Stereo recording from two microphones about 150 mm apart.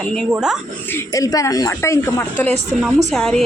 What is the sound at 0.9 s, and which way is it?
Speech, 20° left (ahead or behind).